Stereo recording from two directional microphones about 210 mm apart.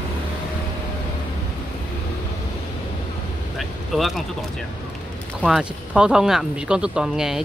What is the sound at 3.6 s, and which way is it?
Speech, centre (ahead or behind).